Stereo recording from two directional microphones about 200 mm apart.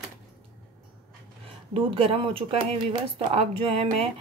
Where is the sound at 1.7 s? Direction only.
25° right (ahead or behind).